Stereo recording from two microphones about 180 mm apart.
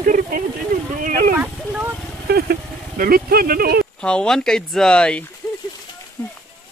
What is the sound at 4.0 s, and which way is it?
Speech, 5° left (ahead or behind).